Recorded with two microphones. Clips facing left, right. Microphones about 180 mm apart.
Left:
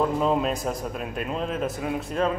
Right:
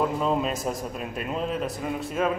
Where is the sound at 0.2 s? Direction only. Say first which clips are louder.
Left 2 dB; centre (ahead or behind).